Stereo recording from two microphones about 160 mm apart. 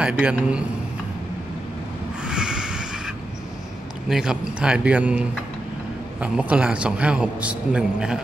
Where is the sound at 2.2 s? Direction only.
5° right (ahead or behind).